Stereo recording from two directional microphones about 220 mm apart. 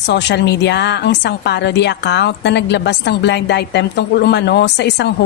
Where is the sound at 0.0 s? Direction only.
50° left (ahead or behind).